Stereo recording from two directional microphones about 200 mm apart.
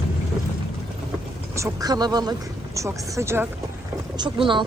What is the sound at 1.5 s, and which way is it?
Speech, 15° right (ahead or behind).